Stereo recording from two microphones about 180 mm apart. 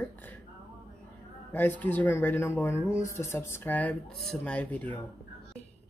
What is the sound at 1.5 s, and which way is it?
Speech, 10° left (ahead or behind).